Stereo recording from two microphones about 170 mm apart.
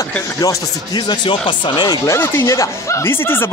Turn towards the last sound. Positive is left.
turn(degrees=15)  # may be behind; listen again after turning